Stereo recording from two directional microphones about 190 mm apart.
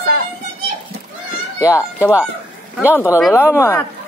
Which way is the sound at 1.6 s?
15° left (ahead or behind).